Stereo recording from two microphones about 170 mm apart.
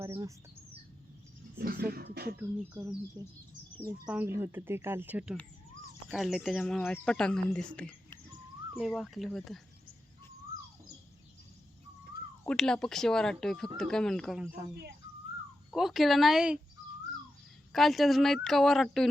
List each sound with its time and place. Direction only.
0.0 s speech: 20° right (ahead or behind)
1.5 s speech: 65° right (ahead or behind)
2.4 s speech: 10° right (ahead or behind)
4.0 s speech: 10° right (ahead or behind)
12.5 s speech: 5° left (ahead or behind)
15.7 s speech: centre (ahead or behind)
17.7 s speech: centre (ahead or behind)